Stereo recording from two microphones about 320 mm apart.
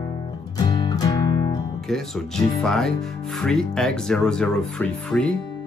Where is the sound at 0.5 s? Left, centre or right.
Centre.